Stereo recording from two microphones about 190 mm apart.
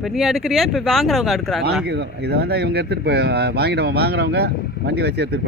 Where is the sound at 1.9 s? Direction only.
60° right (ahead or behind).